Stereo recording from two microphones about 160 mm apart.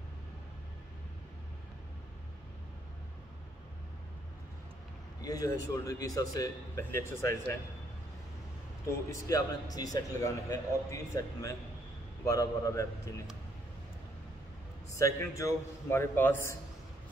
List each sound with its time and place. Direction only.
5.2 s a man's voice: 20° left (ahead or behind)
8.8 s a man's voice: 20° left (ahead or behind)
15.0 s a man's voice: 20° left (ahead or behind)